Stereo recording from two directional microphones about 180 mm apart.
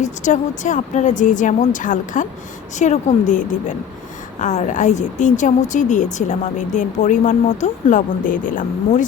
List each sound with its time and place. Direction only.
0.0 s a woman's voice: 45° left (ahead or behind)